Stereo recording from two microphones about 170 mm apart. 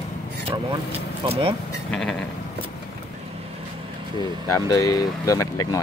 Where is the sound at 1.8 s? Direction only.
5° left (ahead or behind).